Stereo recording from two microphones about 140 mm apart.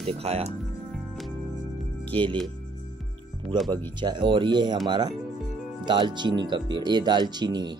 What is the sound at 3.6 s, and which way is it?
Speech, 35° right (ahead or behind).